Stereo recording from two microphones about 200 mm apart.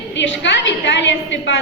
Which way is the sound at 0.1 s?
65° left (ahead or behind).